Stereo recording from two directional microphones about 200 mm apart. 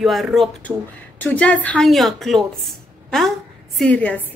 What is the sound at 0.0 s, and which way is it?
A woman's voice, centre (ahead or behind).